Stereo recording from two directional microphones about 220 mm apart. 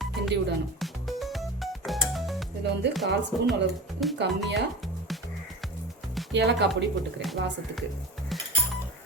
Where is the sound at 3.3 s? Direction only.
Centre (ahead or behind).